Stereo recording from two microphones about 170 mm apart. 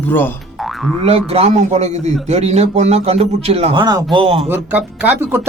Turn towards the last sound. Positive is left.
turn(degrees=-10)  # may be behind; listen again after turning